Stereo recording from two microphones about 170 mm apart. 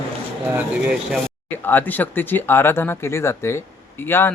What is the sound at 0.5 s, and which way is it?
Speech, 5° right (ahead or behind).